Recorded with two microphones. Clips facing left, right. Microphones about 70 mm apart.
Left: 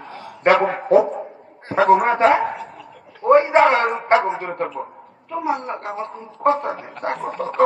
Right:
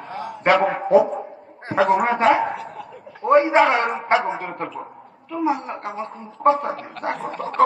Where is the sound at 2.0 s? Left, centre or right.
Left.